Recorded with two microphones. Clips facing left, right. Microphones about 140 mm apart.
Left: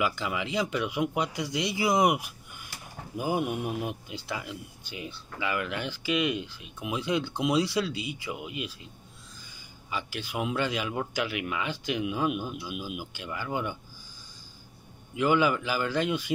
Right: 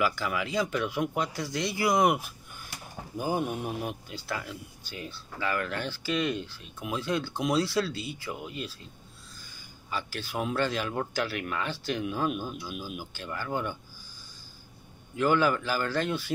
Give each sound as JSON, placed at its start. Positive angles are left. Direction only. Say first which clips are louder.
{"t": 0.0, "sound": "speech", "louder": "right 1 dB", "side_deg": 20}
{"t": 9.8, "sound": "speech", "louder": "even", "side_deg": 15}
{"t": 15.1, "sound": "speech", "louder": "even", "side_deg": 15}